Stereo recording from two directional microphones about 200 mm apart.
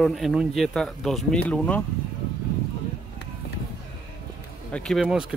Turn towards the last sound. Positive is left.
turn(degrees=0)  # may be behind; listen again after turning